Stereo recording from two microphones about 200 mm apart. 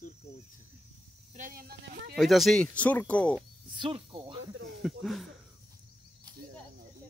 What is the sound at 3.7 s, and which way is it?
Speech, 25° right (ahead or behind).